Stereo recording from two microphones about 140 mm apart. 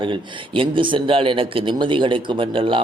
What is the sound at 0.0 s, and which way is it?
A man's voice, 35° right (ahead or behind).